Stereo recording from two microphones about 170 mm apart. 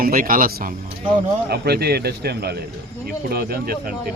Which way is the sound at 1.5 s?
70° right (ahead or behind).